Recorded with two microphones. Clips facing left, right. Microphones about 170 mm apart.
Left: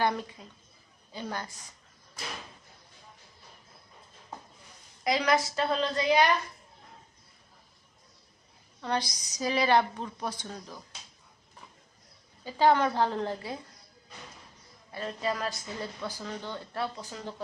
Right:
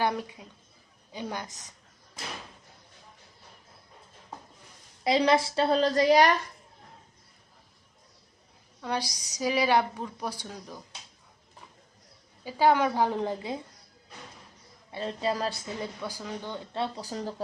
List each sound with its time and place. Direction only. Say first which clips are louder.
0.0 s a woman's voice: even; 10° right (ahead or behind)
5.0 s a woman's voice: right 3 dB; 30° right (ahead or behind)
8.8 s a woman's voice: left 1 dB; 10° right (ahead or behind)
12.5 s a woman's voice: right 1 dB; 10° right (ahead or behind)
14.9 s a woman's voice: right 3 dB; 30° right (ahead or behind)
15.7 s a woman's voice: right 2 dB; 15° right (ahead or behind)
17.0 s a woman's voice: right 5 dB; 40° right (ahead or behind)